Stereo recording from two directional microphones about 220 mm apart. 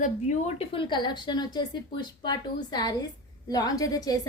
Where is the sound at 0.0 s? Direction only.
25° left (ahead or behind).